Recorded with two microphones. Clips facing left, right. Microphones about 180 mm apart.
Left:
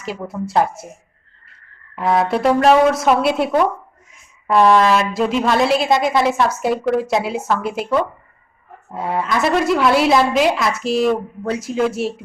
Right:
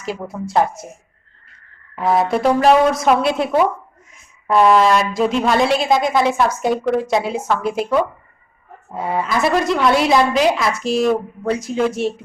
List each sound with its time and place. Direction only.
0.0 s speech: centre (ahead or behind)
2.0 s speech: centre (ahead or behind)